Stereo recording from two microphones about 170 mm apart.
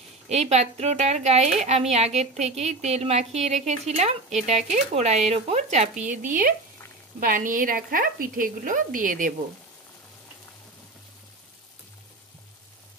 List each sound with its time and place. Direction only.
0.3 s a woman's voice: 40° right (ahead or behind)